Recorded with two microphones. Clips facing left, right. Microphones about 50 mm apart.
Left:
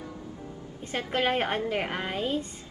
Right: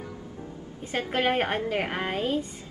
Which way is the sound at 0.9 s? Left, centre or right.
Right.